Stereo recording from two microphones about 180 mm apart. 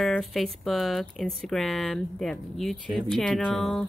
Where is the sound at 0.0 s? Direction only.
Centre (ahead or behind).